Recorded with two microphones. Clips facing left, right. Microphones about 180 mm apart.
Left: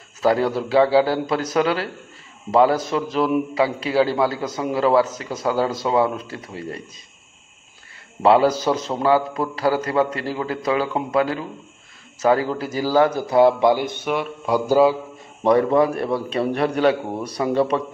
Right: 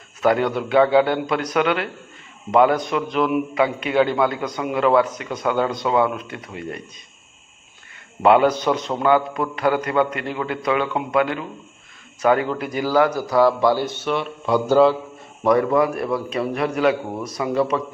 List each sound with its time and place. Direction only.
0.2 s a man's voice: 30° left (ahead or behind)
8.2 s a man's voice: 30° left (ahead or behind); by 15.0 s 10° left (ahead or behind)
15.4 s a man's voice: 30° left (ahead or behind)